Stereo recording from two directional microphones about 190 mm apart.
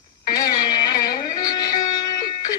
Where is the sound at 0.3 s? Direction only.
20° left (ahead or behind).